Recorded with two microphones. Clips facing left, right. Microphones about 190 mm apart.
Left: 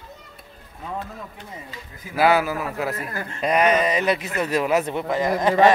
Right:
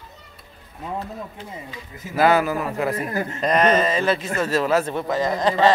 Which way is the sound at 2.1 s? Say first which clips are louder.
Right 1 dB; 5° left (ahead or behind).